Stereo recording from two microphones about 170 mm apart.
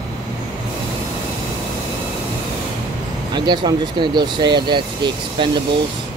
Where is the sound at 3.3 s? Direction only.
25° right (ahead or behind).